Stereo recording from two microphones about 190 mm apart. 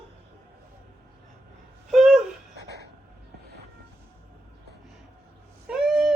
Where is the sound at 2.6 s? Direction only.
60° right (ahead or behind).